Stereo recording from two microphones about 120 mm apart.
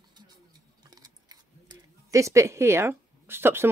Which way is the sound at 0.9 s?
35° right (ahead or behind).